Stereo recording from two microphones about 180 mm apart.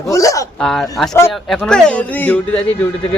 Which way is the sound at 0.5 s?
Centre (ahead or behind).